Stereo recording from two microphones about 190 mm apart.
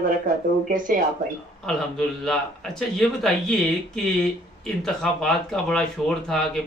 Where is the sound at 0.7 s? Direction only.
45° right (ahead or behind).